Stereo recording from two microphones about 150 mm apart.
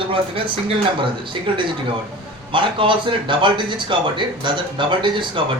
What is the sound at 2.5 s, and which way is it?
Speech, 35° right (ahead or behind).